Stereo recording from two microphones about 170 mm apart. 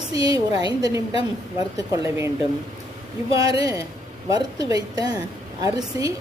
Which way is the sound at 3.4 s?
20° right (ahead or behind).